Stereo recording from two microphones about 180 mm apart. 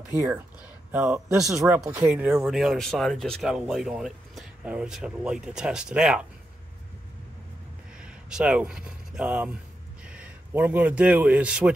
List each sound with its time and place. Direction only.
0.1 s speech: 15° right (ahead or behind)
8.0 s a man's voice: 5° right (ahead or behind)